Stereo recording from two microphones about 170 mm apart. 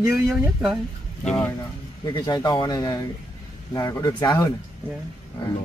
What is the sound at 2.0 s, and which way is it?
Speech, 25° left (ahead or behind).